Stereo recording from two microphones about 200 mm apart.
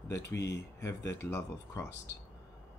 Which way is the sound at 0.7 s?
15° left (ahead or behind).